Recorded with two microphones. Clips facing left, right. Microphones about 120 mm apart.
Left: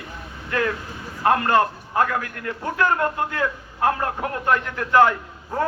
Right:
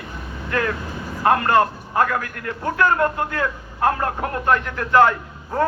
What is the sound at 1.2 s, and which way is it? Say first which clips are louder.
A man's voice: right 2 dB; 15° left (ahead or behind).